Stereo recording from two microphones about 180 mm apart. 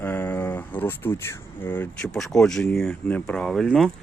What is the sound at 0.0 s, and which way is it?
Speech, 10° left (ahead or behind).